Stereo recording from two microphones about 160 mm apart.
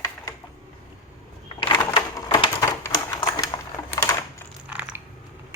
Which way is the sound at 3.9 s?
15° left (ahead or behind).